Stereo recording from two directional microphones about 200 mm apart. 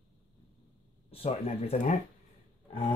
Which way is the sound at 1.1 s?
30° left (ahead or behind).